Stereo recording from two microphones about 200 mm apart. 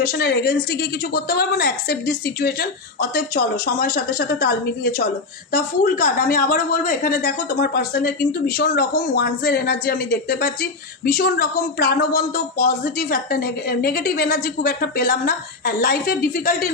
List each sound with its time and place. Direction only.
0.0 s a woman's voice: 50° left (ahead or behind)